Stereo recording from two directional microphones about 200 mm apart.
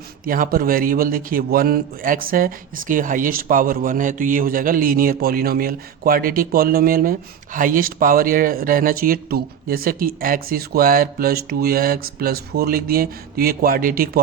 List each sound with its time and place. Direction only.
0.3 s a man's voice: 45° right (ahead or behind)